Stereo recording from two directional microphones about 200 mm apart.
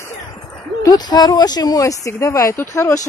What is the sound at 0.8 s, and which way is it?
Speech, 20° left (ahead or behind).